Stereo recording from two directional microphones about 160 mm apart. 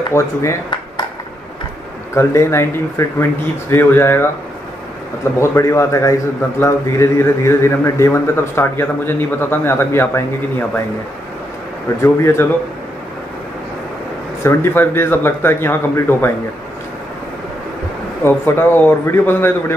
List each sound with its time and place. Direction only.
0.1 s a man's voice: 15° left (ahead or behind)
2.1 s a man's voice: 15° left (ahead or behind)
12.0 s a man's voice: 15° left (ahead or behind)
14.4 s a man's voice: 15° left (ahead or behind)
18.2 s a man's voice: 15° left (ahead or behind)